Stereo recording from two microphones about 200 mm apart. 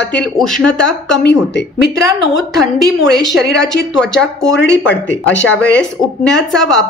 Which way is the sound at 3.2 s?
Centre (ahead or behind).